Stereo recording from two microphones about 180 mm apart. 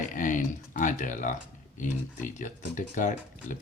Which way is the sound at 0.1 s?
45° left (ahead or behind).